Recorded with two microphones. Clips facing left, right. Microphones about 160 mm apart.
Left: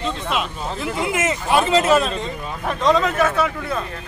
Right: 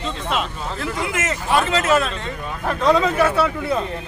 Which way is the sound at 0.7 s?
20° left (ahead or behind).